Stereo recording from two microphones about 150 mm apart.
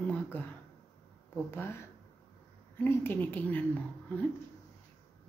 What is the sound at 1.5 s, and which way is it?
Speech, 15° left (ahead or behind).